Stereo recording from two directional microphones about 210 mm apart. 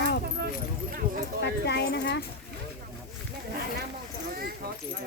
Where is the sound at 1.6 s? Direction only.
55° left (ahead or behind).